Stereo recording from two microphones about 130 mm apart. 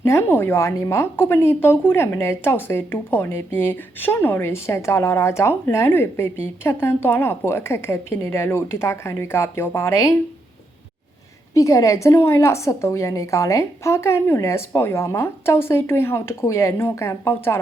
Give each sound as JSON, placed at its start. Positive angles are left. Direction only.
{"t": 0.0, "sound": "a woman's voice", "side_deg": 20}
{"t": 11.5, "sound": "a woman's voice", "side_deg": 25}